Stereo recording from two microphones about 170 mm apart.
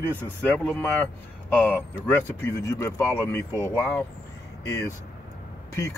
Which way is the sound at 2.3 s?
15° left (ahead or behind).